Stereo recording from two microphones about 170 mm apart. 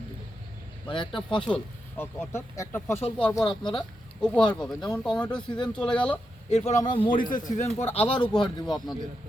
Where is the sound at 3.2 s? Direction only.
25° left (ahead or behind).